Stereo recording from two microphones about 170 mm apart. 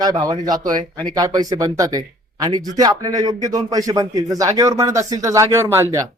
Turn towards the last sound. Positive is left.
turn(degrees=-15)  # may be behind; listen again after turning